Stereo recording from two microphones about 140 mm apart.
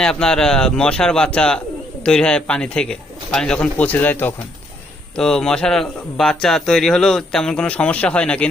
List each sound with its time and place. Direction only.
0.0 s speech: 5° left (ahead or behind)